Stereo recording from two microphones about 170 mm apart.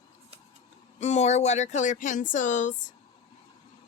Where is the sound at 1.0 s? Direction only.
40° left (ahead or behind).